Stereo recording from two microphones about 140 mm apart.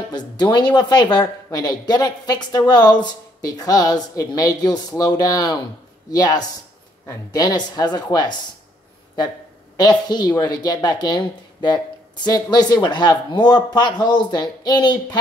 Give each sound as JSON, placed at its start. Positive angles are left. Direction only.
{"t": 0.1, "sound": "a woman's voice", "side_deg": 30}
{"t": 9.8, "sound": "a woman's voice", "side_deg": 30}